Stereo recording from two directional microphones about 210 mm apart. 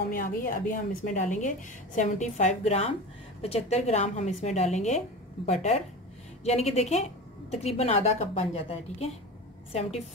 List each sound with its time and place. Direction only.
0.1 s a woman's voice: 40° left (ahead or behind)